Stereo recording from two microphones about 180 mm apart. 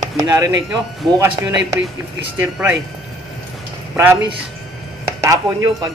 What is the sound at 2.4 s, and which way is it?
Chopping, 10° right (ahead or behind).